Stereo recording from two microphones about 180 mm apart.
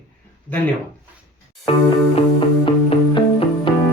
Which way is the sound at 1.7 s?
35° left (ahead or behind).